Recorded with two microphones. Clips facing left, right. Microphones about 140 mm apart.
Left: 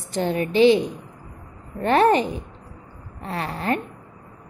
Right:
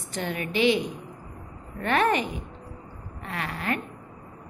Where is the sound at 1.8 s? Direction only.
30° left (ahead or behind).